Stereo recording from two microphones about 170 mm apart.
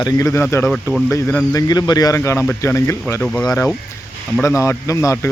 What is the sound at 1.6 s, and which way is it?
Speech, 25° left (ahead or behind).